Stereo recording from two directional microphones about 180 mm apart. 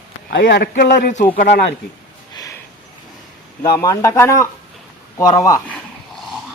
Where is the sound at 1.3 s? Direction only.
40° left (ahead or behind).